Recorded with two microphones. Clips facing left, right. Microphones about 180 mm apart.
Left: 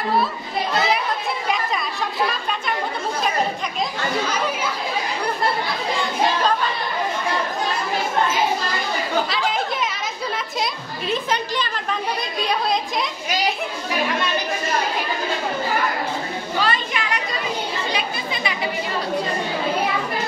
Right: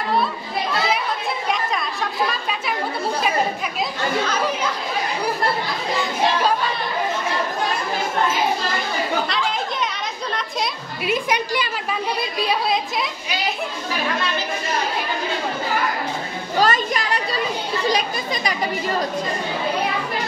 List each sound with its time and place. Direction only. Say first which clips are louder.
9.3 s children playing: left 1 dB; centre (ahead or behind)
11.1 s a woman's voice: right 2 dB; 10° right (ahead or behind)
16.5 s children playing: right 5 dB; 40° right (ahead or behind)
17.8 s chatter: right 4 dB; 40° right (ahead or behind)